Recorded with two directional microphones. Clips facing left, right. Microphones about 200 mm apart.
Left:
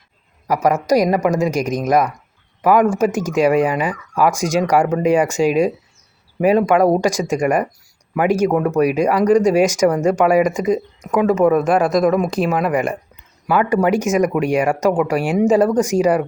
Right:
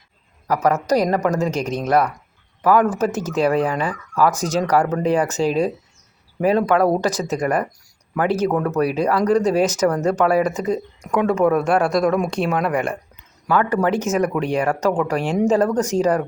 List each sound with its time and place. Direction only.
0.4 s speech: 10° left (ahead or behind)